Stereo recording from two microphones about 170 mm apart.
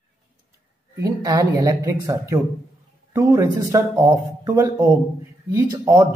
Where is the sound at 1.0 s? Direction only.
20° right (ahead or behind).